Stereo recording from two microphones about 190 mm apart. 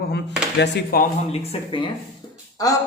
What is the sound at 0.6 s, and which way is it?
Speech, 50° left (ahead or behind).